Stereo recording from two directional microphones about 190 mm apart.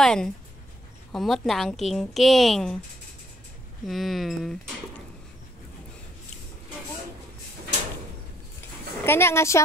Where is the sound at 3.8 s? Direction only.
Centre (ahead or behind).